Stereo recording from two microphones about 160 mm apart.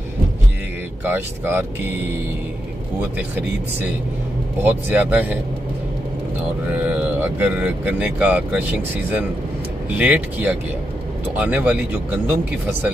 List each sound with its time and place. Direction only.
1.0 s speech: 10° right (ahead or behind)
3.2 s speech: 10° right (ahead or behind)
6.7 s speech: 10° right (ahead or behind)